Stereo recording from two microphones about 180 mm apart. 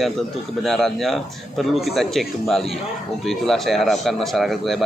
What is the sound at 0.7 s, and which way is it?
Speech, centre (ahead or behind).